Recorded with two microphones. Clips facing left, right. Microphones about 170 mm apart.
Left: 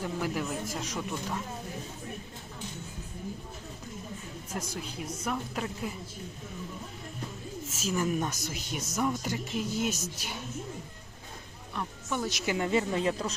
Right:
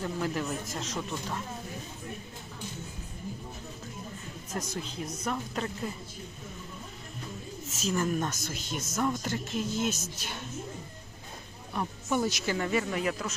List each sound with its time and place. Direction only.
0.0 s a woman's voice: 10° left (ahead or behind)
4.5 s a woman's voice: 10° left (ahead or behind)
7.8 s a woman's voice: 10° left (ahead or behind)
11.7 s music: 20° right (ahead or behind)
12.5 s speech: 20° left (ahead or behind)